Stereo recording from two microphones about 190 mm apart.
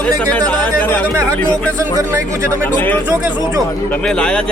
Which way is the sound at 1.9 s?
15° right (ahead or behind).